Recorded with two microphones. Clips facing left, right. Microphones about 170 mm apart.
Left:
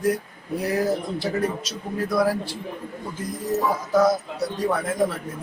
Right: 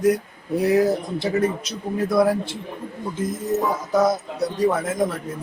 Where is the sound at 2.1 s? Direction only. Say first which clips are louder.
Right 3 dB; 25° right (ahead or behind).